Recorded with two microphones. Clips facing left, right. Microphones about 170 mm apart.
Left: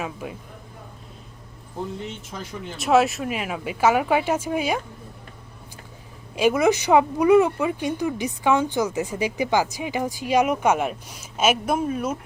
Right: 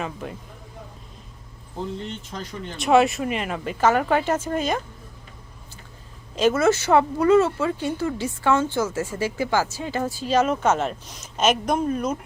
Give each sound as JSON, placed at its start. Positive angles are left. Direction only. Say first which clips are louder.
{"t": 0.0, "sound": "speech", "louder": "even", "side_deg": 5}
{"t": 2.0, "sound": "speech", "louder": "right 1 dB", "side_deg": 5}
{"t": 6.3, "sound": "speech", "louder": "even", "side_deg": 10}